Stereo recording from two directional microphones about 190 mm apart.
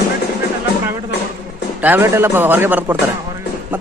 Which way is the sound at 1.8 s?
10° right (ahead or behind).